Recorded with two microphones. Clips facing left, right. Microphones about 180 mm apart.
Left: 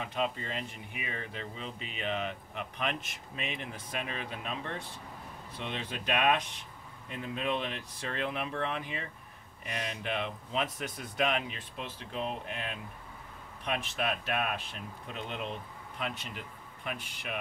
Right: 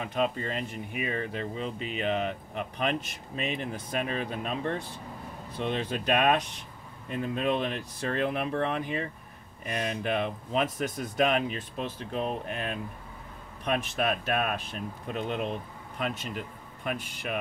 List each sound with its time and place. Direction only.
0.0 s speech: 50° right (ahead or behind)